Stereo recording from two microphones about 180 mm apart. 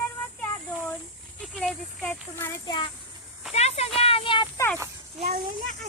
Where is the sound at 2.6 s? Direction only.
25° left (ahead or behind).